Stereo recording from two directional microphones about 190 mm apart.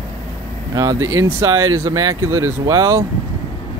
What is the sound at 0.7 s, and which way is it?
Speech, 15° right (ahead or behind).